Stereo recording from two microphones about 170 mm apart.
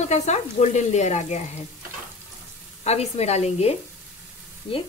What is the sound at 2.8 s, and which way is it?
A woman's voice, 40° left (ahead or behind).